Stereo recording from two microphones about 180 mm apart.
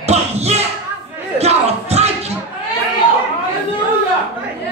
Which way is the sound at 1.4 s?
35° right (ahead or behind).